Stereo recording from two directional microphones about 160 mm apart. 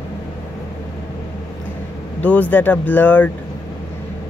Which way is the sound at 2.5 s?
10° left (ahead or behind).